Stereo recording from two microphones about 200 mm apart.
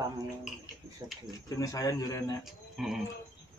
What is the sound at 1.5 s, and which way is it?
Speech, 15° left (ahead or behind).